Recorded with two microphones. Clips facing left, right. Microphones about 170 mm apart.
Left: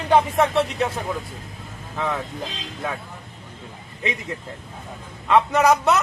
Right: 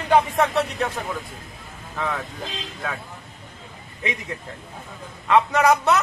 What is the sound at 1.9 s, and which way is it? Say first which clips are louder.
Speech: left 2 dB; centre (ahead or behind).